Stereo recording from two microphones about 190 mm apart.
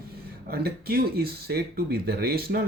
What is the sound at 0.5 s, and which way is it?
Speech, 55° right (ahead or behind).